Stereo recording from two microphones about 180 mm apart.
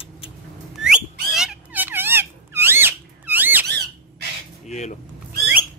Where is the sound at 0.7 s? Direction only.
5° right (ahead or behind).